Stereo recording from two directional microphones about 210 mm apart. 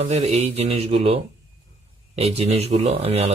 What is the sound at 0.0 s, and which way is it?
Speech, 30° right (ahead or behind).